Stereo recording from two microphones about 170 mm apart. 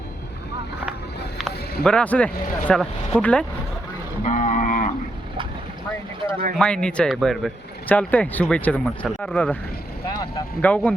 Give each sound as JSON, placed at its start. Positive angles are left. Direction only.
{"t": 1.8, "sound": "speech", "side_deg": 5}
{"t": 4.2, "sound": "a sound", "side_deg": 45}
{"t": 6.6, "sound": "speech", "side_deg": 5}
{"t": 10.6, "sound": "speech", "side_deg": 10}